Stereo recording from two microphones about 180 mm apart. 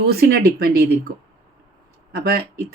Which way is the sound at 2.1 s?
60° right (ahead or behind).